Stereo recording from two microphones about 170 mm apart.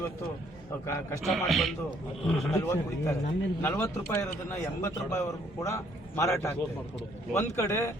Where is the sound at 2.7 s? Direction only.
15° left (ahead or behind).